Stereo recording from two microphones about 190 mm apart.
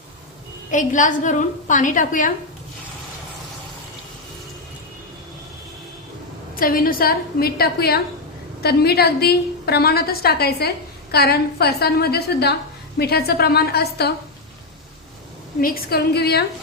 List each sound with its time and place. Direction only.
0.7 s a woman's voice: 40° left (ahead or behind)
6.6 s a woman's voice: 50° left (ahead or behind)
15.6 s a woman's voice: 50° left (ahead or behind)